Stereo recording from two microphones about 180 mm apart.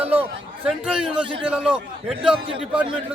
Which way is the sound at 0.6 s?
5° right (ahead or behind).